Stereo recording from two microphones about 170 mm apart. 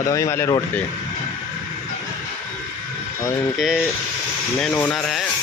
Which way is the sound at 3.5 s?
Centre (ahead or behind).